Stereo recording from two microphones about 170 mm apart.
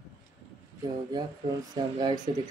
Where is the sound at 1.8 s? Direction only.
25° right (ahead or behind).